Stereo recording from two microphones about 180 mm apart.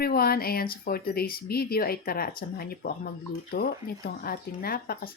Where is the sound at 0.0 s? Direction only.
55° left (ahead or behind).